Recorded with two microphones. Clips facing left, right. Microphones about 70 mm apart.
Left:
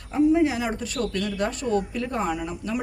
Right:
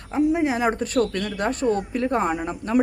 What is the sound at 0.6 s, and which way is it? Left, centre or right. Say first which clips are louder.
Speech: right 6 dB; right.